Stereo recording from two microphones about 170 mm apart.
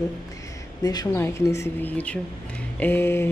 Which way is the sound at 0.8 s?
20° left (ahead or behind).